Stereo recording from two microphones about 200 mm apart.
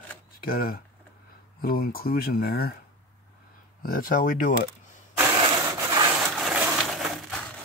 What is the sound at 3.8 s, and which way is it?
Speech, 45° left (ahead or behind).